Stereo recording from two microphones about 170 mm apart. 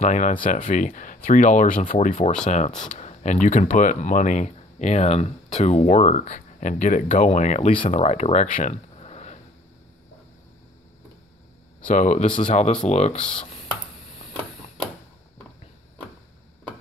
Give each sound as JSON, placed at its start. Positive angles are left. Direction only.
{"t": 0.0, "sound": "speech", "side_deg": 45}
{"t": 9.0, "sound": "sniff", "side_deg": 40}
{"t": 11.9, "sound": "speech", "side_deg": 45}
{"t": 12.3, "sound": "speech", "side_deg": 30}
{"t": 12.8, "sound": "speech", "side_deg": 40}